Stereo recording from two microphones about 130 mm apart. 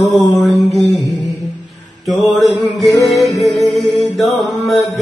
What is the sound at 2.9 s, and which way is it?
Music, 25° left (ahead or behind).